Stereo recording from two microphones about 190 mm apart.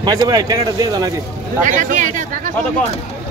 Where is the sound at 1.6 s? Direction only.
45° right (ahead or behind).